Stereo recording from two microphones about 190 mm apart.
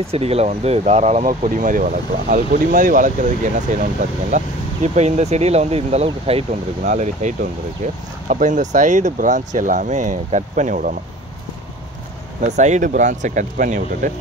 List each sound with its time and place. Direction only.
0.0 s speech: 30° right (ahead or behind)
12.4 s speech: 40° right (ahead or behind)